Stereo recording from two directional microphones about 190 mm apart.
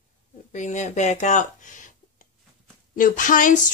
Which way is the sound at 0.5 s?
40° left (ahead or behind).